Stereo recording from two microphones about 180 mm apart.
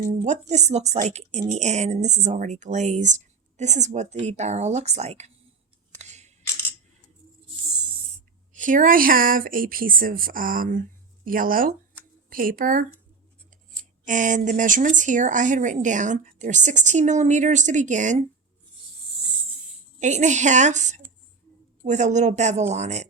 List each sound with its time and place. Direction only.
0.1 s speech: 40° right (ahead or behind)
6.0 s scissors: 40° right (ahead or behind)
8.5 s speech: 45° right (ahead or behind)
14.0 s speech: 45° right (ahead or behind)
20.0 s speech: 40° right (ahead or behind)